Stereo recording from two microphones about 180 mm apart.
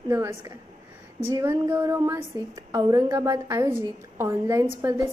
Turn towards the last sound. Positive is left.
turn(degrees=-15)  # may be behind; listen again after turning